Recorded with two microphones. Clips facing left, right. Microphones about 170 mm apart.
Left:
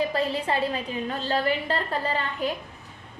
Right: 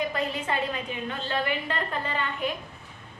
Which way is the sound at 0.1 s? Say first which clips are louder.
Left 3 dB; 30° left (ahead or behind).